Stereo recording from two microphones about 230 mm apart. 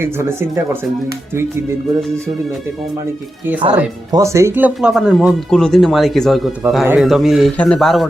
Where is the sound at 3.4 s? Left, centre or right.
Centre.